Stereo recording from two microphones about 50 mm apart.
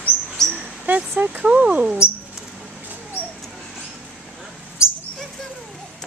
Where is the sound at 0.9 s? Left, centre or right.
Right.